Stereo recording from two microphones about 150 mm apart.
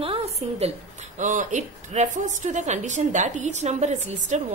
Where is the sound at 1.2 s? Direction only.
60° right (ahead or behind).